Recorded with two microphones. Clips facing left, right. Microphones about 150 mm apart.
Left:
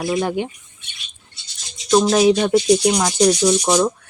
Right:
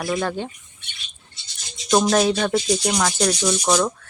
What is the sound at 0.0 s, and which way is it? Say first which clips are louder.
Speech: left 4 dB; 15° left (ahead or behind).